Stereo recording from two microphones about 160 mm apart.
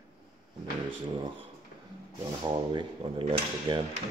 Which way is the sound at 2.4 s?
30° right (ahead or behind).